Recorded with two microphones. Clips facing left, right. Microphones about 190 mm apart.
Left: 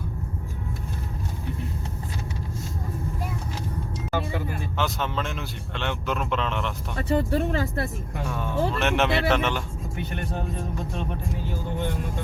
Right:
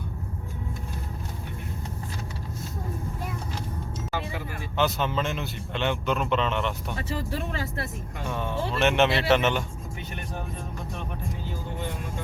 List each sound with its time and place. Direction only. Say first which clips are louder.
4.8 s a man's voice: right 3 dB; centre (ahead or behind)
7.2 s speech: left 7 dB; 50° left (ahead or behind)
8.3 s a man's voice: left 3 dB; centre (ahead or behind)